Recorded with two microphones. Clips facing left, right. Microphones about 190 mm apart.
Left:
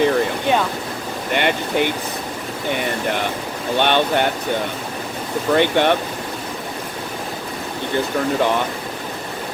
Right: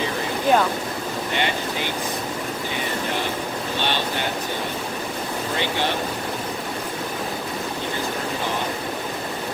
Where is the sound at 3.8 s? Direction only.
60° left (ahead or behind).